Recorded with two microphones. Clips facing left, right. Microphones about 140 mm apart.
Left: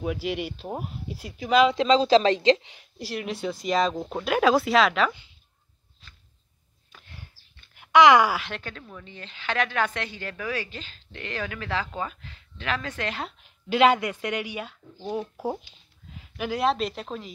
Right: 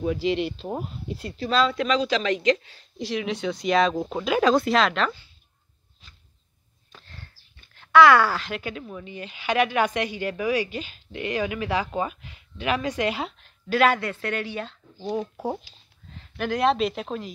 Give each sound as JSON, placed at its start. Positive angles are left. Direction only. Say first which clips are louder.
{"t": 0.0, "sound": "speech", "louder": "right 4 dB", "side_deg": 10}
{"t": 3.0, "sound": "speech", "louder": "right 3 dB", "side_deg": 5}
{"t": 7.0, "sound": "a sound", "louder": "right 1 dB", "side_deg": 15}
{"t": 7.7, "sound": "speech", "louder": "right 1 dB", "side_deg": 15}
{"t": 8.5, "sound": "a woman's voice", "louder": "right 5 dB", "side_deg": -10}
{"t": 13.4, "sound": "speech", "louder": "left 2 dB", "side_deg": 20}